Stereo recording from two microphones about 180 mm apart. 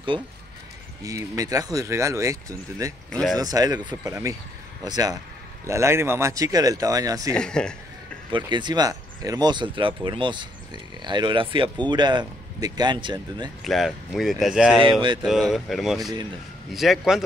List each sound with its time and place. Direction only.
1.0 s speech: 20° right (ahead or behind)
3.1 s speech: 5° left (ahead or behind)
3.3 s speech: 20° right (ahead or behind)
7.3 s speech: 5° left (ahead or behind)
8.3 s speech: 25° right (ahead or behind)
13.7 s speech: centre (ahead or behind)
14.9 s speech: 25° right (ahead or behind)
15.2 s speech: centre (ahead or behind)